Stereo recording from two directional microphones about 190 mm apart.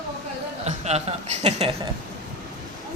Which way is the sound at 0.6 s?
35° right (ahead or behind).